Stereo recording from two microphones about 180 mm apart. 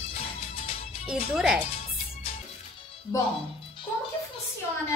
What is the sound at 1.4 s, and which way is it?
Speech, 5° right (ahead or behind).